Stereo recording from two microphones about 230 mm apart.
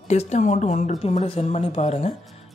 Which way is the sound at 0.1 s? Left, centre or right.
Left.